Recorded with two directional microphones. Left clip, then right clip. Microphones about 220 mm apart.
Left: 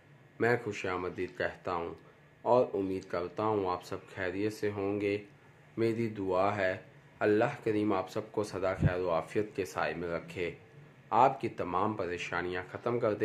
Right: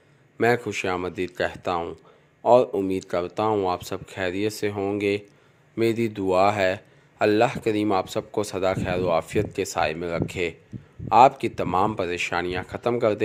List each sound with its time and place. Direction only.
0.3 s speech: 40° right (ahead or behind)